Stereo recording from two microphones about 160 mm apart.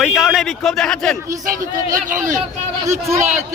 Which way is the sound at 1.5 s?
55° right (ahead or behind).